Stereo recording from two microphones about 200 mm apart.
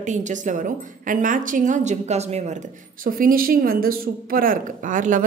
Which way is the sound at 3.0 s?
45° right (ahead or behind).